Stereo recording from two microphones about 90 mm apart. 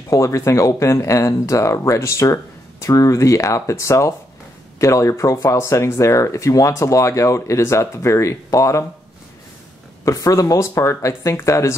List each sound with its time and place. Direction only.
0.1 s speech: 35° left (ahead or behind)
10.0 s speech: 35° left (ahead or behind)